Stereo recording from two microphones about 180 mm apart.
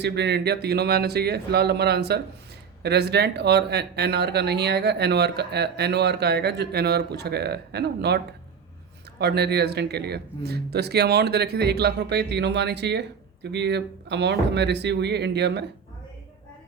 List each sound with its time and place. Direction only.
0.0 s speech: 70° right (ahead or behind)